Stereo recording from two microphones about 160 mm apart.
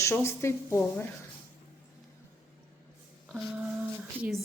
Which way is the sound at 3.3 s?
5° right (ahead or behind).